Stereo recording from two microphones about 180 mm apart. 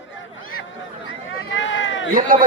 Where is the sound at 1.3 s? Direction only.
90° left.